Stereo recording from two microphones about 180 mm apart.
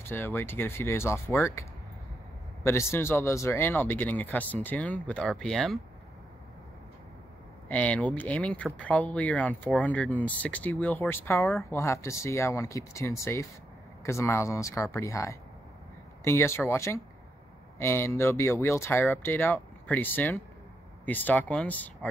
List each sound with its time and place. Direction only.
0.1 s speech: 10° left (ahead or behind)
7.6 s speech: 10° left (ahead or behind)